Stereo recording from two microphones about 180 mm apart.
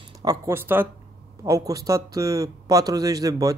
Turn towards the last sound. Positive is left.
turn(degrees=-20)  # may be behind; listen again after turning